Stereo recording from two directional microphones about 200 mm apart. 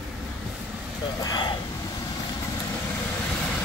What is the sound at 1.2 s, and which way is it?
Vehicle, 20° left (ahead or behind).